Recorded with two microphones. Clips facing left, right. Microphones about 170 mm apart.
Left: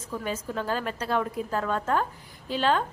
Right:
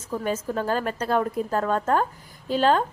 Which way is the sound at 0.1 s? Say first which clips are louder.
Right 5 dB; 45° right (ahead or behind).